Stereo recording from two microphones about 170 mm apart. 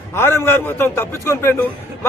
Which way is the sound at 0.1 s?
15° left (ahead or behind).